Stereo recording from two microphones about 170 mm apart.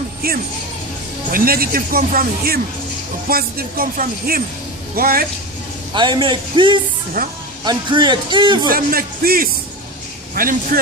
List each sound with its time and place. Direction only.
0.2 s speech: 60° right (ahead or behind)
5.9 s speech: 30° right (ahead or behind)
7.2 s speech: 60° right (ahead or behind)
7.6 s speech: 25° right (ahead or behind)
8.7 s speech: 60° right (ahead or behind)